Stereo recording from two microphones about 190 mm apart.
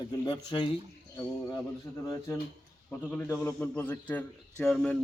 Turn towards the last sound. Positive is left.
turn(degrees=5)  # may be behind; listen again after turning